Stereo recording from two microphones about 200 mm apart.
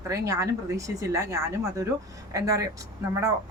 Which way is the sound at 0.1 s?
15° right (ahead or behind).